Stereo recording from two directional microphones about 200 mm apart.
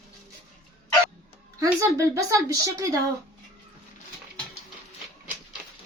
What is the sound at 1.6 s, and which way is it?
A woman's voice, 15° right (ahead or behind).